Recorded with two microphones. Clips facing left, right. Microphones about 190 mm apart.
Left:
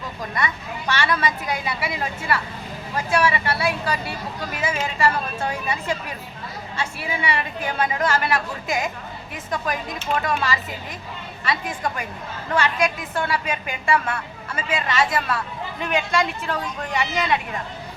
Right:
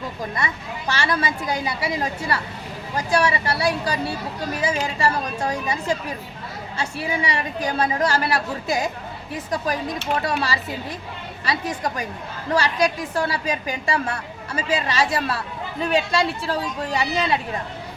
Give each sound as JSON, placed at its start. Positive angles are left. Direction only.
{"t": 0.3, "sound": "a woman's voice", "side_deg": -30}
{"t": 10.2, "sound": "a woman's voice", "side_deg": -35}